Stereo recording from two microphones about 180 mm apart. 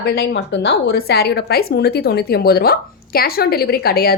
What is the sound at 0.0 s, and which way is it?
A woman's voice, 65° left (ahead or behind).